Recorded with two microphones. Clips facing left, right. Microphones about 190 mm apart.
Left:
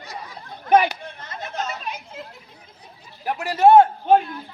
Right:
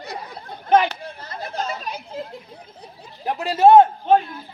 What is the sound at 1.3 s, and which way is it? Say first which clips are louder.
Chatter: right 2 dB; 35° right (ahead or behind).